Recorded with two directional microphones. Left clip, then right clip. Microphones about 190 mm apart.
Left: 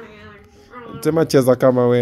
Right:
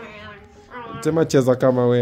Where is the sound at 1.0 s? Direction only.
15° left (ahead or behind).